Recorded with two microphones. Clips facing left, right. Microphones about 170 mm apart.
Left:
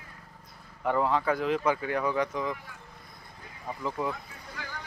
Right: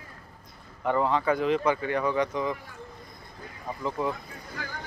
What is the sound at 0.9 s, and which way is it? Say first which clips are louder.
Speech: right 2 dB; 5° left (ahead or behind).